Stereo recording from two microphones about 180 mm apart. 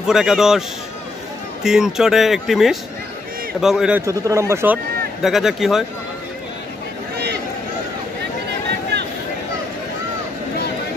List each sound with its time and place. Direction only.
0.0 s speech: centre (ahead or behind)
4.0 s speech: 15° right (ahead or behind)
5.2 s speech: centre (ahead or behind)